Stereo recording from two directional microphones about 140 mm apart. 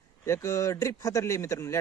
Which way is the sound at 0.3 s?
20° left (ahead or behind).